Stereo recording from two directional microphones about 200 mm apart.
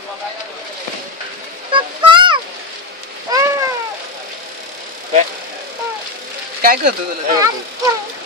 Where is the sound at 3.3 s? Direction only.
15° right (ahead or behind).